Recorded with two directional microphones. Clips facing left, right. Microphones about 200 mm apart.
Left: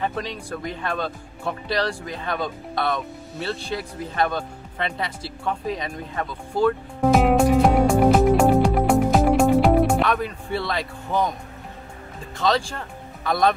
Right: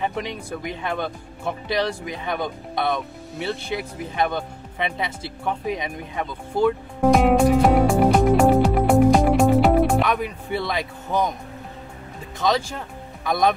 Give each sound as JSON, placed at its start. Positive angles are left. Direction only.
{"t": 0.0, "sound": "speech", "side_deg": -20}
{"t": 7.0, "sound": "music", "side_deg": 0}
{"t": 10.2, "sound": "speech", "side_deg": -15}
{"t": 12.4, "sound": "speech", "side_deg": -20}